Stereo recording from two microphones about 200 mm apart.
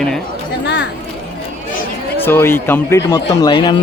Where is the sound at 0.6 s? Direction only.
60° left (ahead or behind).